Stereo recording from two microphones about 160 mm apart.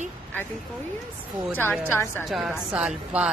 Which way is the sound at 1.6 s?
15° left (ahead or behind).